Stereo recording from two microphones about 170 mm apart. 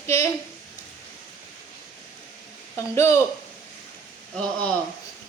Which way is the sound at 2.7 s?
15° left (ahead or behind).